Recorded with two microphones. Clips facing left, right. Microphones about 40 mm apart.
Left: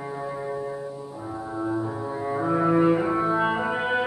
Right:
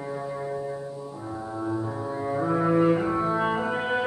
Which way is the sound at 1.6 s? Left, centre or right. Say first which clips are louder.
Left 2 dB; centre.